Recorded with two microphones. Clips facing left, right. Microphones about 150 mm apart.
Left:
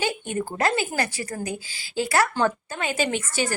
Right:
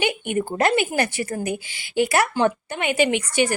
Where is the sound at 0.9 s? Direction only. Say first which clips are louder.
Right 4 dB; 25° right (ahead or behind).